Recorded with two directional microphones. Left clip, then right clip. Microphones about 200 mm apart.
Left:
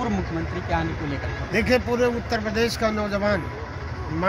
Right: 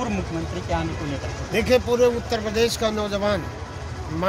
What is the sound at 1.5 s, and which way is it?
Speech, 10° left (ahead or behind).